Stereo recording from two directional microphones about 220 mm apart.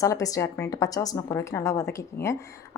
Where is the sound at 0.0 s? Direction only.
15° left (ahead or behind).